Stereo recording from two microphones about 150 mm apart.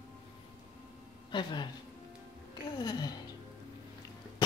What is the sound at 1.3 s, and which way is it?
Speech, 30° left (ahead or behind).